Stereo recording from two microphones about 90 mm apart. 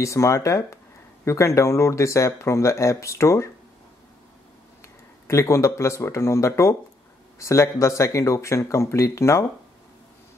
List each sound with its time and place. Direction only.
0.0 s speech: 35° left (ahead or behind)
4.8 s speech: 35° left (ahead or behind)